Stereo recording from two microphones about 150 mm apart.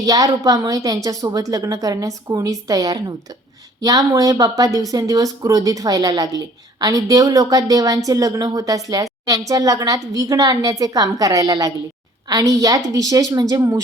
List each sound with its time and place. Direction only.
0.0 s speech: 25° right (ahead or behind)